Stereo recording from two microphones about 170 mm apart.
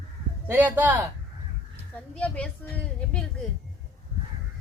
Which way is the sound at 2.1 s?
5° left (ahead or behind).